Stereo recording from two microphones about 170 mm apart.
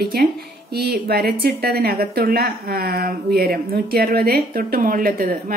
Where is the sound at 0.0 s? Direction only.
60° right (ahead or behind).